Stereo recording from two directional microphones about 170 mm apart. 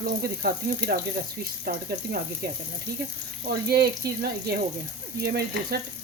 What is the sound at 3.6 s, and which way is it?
Speech, 70° right (ahead or behind).